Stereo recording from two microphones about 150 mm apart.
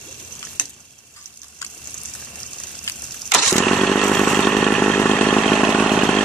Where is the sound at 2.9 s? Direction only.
20° left (ahead or behind).